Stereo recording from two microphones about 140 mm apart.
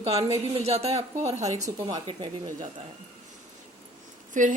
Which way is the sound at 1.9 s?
35° right (ahead or behind).